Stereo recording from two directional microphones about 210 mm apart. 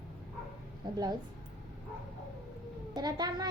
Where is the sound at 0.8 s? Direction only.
20° right (ahead or behind).